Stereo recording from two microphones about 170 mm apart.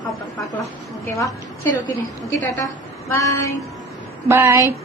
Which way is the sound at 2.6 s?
20° left (ahead or behind).